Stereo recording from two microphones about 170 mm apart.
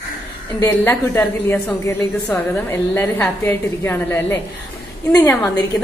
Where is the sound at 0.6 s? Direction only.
15° left (ahead or behind).